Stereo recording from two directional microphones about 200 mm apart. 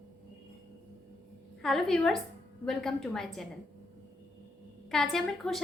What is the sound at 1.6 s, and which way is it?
A woman's voice, centre (ahead or behind).